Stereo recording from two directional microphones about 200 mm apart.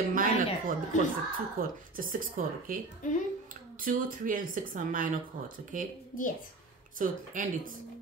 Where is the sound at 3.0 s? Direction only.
40° left (ahead or behind).